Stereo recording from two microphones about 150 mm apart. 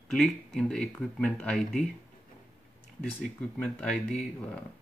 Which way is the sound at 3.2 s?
5° left (ahead or behind).